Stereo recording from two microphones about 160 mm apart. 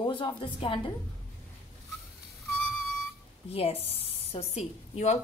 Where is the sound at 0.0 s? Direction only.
30° left (ahead or behind).